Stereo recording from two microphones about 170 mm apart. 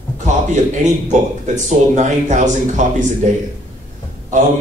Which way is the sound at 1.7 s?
45° right (ahead or behind).